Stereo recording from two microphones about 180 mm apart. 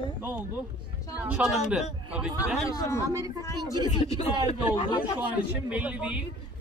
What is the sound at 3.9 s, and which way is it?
Speech, 25° left (ahead or behind).